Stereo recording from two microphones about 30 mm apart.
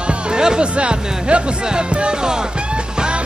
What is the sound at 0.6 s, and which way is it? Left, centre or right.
Speech, right.